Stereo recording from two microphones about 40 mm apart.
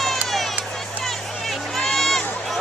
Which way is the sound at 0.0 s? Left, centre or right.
Centre.